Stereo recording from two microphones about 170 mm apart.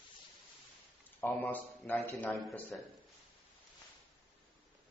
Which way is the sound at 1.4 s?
5° left (ahead or behind).